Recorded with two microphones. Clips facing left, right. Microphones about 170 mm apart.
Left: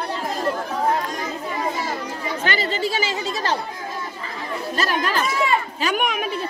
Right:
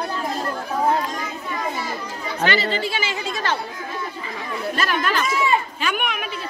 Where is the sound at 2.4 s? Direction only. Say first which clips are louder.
Right 3 dB; 45° left (ahead or behind).